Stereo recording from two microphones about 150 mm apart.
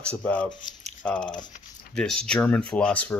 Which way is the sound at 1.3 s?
60° left (ahead or behind).